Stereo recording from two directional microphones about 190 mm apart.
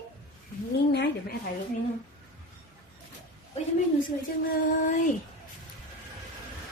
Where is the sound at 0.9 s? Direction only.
60° left (ahead or behind).